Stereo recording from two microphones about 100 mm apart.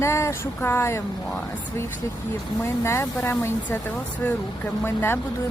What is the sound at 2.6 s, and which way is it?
Speech, 25° left (ahead or behind).